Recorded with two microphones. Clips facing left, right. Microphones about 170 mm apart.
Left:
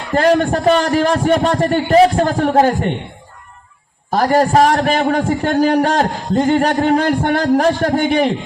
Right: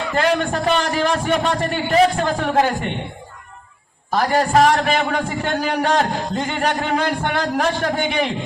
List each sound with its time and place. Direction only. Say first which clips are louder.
0.1 s a man's voice: left 7 dB; 40° left (ahead or behind)
4.1 s a man's voice: left 4 dB; 40° left (ahead or behind)